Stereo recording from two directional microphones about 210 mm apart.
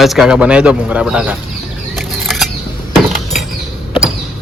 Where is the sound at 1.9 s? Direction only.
Centre (ahead or behind).